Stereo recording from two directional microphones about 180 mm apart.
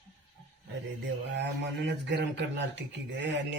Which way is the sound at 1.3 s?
75° right (ahead or behind).